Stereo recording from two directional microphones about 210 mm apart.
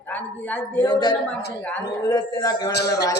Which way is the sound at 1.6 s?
10° left (ahead or behind).